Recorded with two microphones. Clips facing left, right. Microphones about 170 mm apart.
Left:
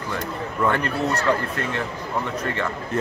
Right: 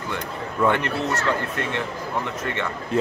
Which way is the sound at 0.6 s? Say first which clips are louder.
Right 2 dB; 15° right (ahead or behind).